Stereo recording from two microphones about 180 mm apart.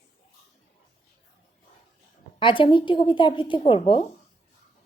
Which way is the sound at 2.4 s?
30° left (ahead or behind).